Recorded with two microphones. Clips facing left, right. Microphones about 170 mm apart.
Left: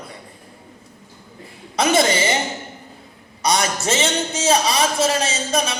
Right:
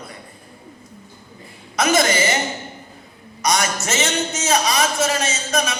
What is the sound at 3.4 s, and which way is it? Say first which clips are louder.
A man's voice: left 1 dB; 30° left (ahead or behind).